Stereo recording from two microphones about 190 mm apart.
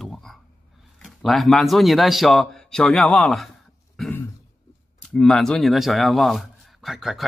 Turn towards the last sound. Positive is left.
turn(degrees=0)  # may be behind; listen again after turning